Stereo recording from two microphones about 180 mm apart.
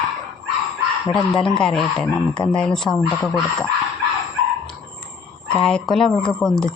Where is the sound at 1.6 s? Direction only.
5° left (ahead or behind).